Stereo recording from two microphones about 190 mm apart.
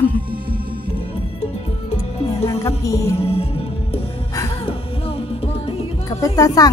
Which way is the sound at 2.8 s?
15° left (ahead or behind).